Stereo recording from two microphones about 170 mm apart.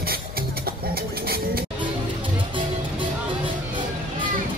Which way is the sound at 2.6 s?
30° right (ahead or behind).